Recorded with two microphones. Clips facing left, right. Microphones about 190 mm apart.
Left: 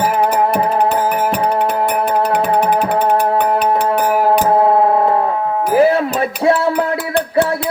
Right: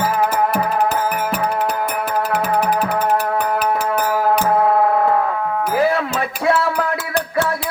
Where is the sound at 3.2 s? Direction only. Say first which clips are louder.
Left 4 dB; 30° left (ahead or behind).